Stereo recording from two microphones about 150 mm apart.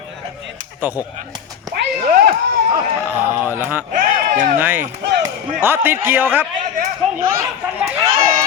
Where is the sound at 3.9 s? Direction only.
65° right (ahead or behind).